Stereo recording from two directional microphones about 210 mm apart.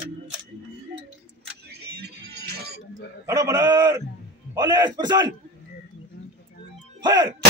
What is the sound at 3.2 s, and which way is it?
A man's voice, 15° right (ahead or behind).